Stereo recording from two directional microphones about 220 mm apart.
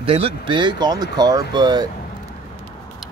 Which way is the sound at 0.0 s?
25° right (ahead or behind).